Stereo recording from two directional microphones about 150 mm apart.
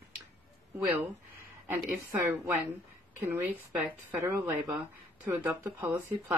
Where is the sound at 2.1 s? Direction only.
15° right (ahead or behind).